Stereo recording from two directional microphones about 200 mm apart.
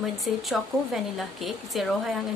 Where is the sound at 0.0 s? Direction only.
Centre (ahead or behind).